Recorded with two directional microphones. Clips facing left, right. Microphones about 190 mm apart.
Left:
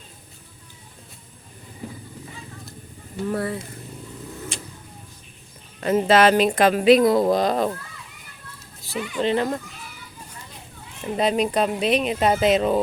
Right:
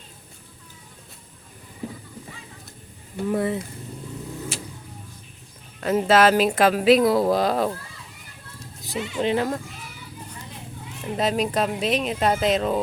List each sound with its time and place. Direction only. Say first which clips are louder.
3.2 s speech: right 2 dB; 20° right (ahead or behind)
4.5 s vehicle: right 2 dB; 5° right (ahead or behind)
5.8 s speech: left 1 dB; centre (ahead or behind)
8.8 s children playing: even; 20° right (ahead or behind)
9.1 s speech: left 1 dB; 10° right (ahead or behind)
11.0 s speech: left 2 dB; 5° left (ahead or behind)